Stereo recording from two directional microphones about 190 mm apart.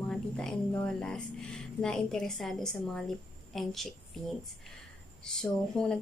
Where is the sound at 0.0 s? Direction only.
5° left (ahead or behind).